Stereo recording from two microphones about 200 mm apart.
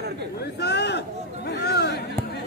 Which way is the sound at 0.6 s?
55° left (ahead or behind).